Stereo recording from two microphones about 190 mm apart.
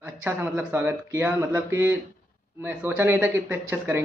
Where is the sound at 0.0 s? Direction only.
10° right (ahead or behind).